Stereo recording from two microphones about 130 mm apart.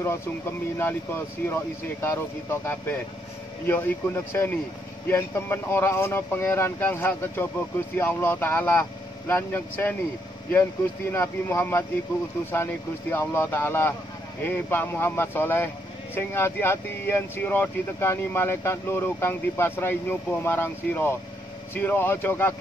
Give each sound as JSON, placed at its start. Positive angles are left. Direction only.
{"t": 0.0, "sound": "speech", "side_deg": 20}
{"t": 13.1, "sound": "speech", "side_deg": 20}